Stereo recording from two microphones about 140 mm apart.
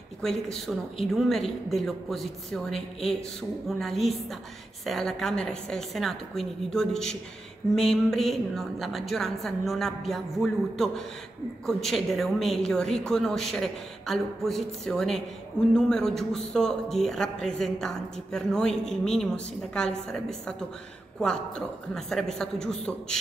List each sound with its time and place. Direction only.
0.2 s a man's voice: 5° left (ahead or behind)